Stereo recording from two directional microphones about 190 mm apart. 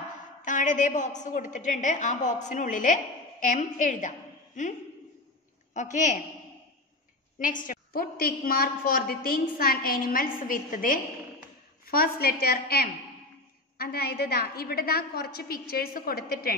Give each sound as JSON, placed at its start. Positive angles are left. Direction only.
{"t": 0.4, "sound": "a woman's voice", "side_deg": 40}
{"t": 7.3, "sound": "a woman's voice", "side_deg": 45}